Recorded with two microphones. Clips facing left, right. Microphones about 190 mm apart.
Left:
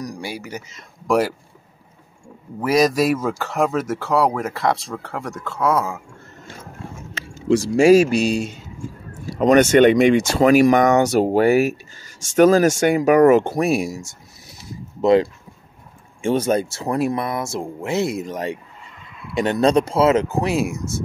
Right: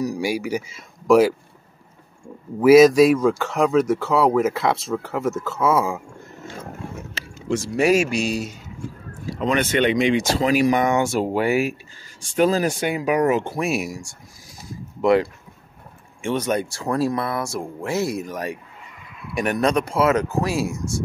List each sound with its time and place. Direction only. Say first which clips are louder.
0.0 s speech: right 7 dB; 10° right (ahead or behind)
2.6 s speech: right 6 dB; 5° right (ahead or behind)
7.5 s speech: left 6 dB; 30° left (ahead or behind)
9.4 s speech: left 8 dB; 45° left (ahead or behind)
13.7 s speech: left 3 dB; 25° left (ahead or behind)